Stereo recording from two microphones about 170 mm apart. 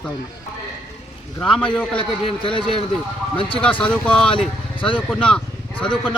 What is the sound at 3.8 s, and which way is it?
Speech, 5° left (ahead or behind).